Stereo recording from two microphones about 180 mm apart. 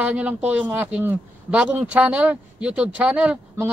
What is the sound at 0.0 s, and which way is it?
A woman's voice, 5° right (ahead or behind).